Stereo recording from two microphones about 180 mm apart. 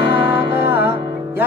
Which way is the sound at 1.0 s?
25° right (ahead or behind).